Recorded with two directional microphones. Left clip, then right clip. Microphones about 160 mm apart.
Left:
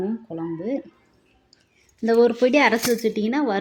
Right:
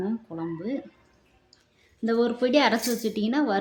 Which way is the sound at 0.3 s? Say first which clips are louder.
Left 4 dB; 15° left (ahead or behind).